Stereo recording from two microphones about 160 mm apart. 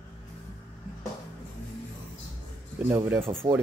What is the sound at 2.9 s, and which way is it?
Speech, 10° right (ahead or behind).